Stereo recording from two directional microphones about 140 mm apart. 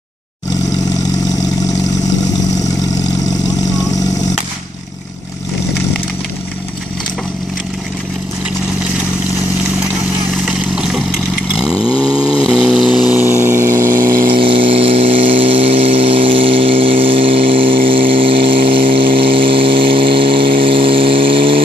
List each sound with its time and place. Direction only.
10.4 s vehicle: 5° right (ahead or behind)
14.3 s vehicle: 40° right (ahead or behind)